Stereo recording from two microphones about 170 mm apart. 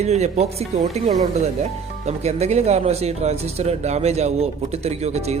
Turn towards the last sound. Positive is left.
turn(degrees=-40)  # may be behind; listen again after turning